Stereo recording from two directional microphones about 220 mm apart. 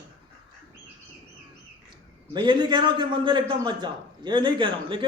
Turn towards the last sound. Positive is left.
turn(degrees=-20)  # may be behind; listen again after turning